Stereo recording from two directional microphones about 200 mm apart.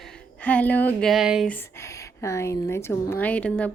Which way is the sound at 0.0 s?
10° left (ahead or behind).